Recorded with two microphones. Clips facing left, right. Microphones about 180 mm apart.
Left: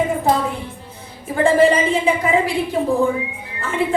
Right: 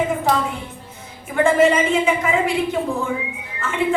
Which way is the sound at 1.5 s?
35° left (ahead or behind).